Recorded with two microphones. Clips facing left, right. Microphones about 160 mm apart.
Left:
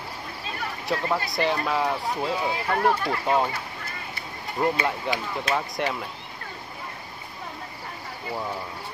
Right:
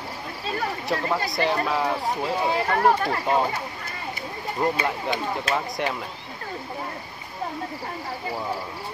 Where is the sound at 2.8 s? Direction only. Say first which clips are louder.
Right 2 dB; 40° right (ahead or behind).